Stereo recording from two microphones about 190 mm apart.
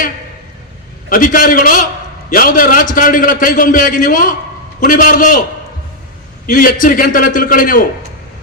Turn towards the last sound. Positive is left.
turn(degrees=45)  # may be behind; listen again after turning